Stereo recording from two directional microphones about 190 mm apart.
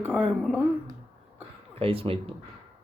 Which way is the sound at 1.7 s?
30° right (ahead or behind).